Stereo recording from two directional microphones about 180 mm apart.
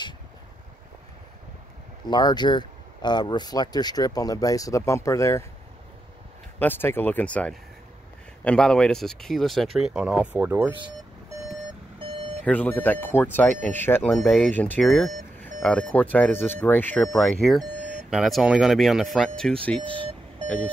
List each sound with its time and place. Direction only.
2.0 s speech: 25° left (ahead or behind)
6.6 s speech: 10° left (ahead or behind); by 10.7 s 10° right (ahead or behind)
10.7 s speech: 30° right (ahead or behind)
12.0 s vehicle: 30° right (ahead or behind)
12.4 s speech: 10° left (ahead or behind)
19.8 s vehicle: 30° right (ahead or behind)
20.4 s a sound: 5° left (ahead or behind)